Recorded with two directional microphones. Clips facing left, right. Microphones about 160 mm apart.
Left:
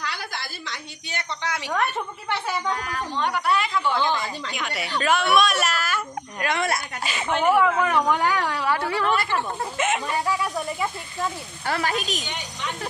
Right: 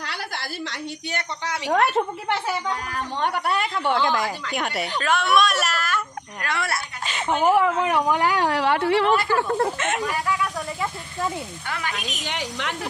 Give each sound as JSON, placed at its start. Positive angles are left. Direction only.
{"t": 0.0, "sound": "a sound", "side_deg": -70}
{"t": 1.4, "sound": "a woman's voice", "side_deg": -35}
{"t": 3.2, "sound": "speech", "side_deg": -55}
{"t": 5.0, "sound": "speech", "side_deg": 5}
{"t": 6.4, "sound": "speech", "side_deg": 20}
{"t": 7.2, "sound": "speech", "side_deg": -25}
{"t": 7.9, "sound": "speech", "side_deg": -10}
{"t": 8.7, "sound": "speech", "side_deg": -25}
{"t": 9.8, "sound": "speech", "side_deg": 5}
{"t": 11.6, "sound": "speech", "side_deg": 35}
{"t": 12.3, "sound": "speech", "side_deg": -85}